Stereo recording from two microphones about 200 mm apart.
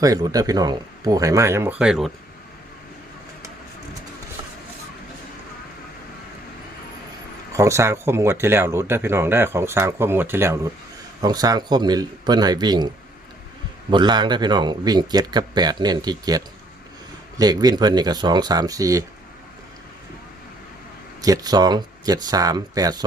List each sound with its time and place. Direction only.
0.0 s speech: 20° right (ahead or behind); by 2.1 s centre (ahead or behind)
7.5 s speech: 15° right (ahead or behind)
13.9 s speech: 20° right (ahead or behind)
21.2 s speech: 20° right (ahead or behind)